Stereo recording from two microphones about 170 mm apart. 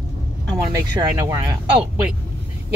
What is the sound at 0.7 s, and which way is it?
Speech, 20° right (ahead or behind).